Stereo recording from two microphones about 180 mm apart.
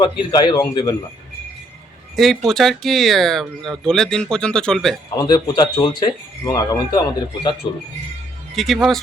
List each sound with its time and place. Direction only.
0.0 s speech: 25° left (ahead or behind)
2.1 s speech: centre (ahead or behind)
5.1 s speech: 25° left (ahead or behind)
8.5 s speech: centre (ahead or behind)